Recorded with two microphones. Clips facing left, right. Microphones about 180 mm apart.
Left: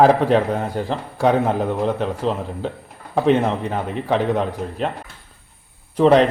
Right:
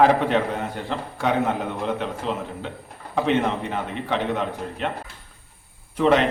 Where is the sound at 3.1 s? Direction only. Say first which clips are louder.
Left 4 dB; 40° left (ahead or behind).